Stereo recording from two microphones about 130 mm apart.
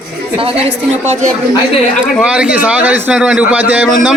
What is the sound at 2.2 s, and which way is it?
A man's voice, 10° right (ahead or behind).